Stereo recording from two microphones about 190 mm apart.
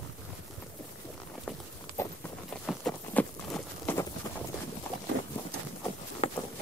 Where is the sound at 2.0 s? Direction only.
15° left (ahead or behind).